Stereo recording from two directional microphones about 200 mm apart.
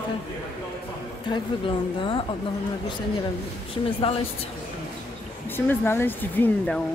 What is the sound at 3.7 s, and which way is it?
Speech, 25° left (ahead or behind).